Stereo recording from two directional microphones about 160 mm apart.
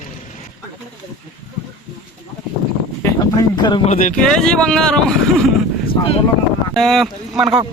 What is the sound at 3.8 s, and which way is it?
Speech, 50° left (ahead or behind).